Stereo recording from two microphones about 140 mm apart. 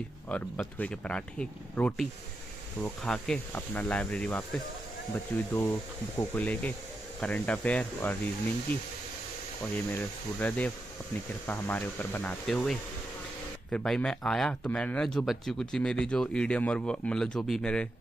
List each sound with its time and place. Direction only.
0.3 s speech: 10° left (ahead or behind)